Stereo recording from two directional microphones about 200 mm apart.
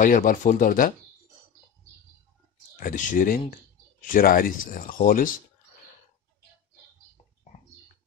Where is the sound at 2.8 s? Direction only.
45° left (ahead or behind).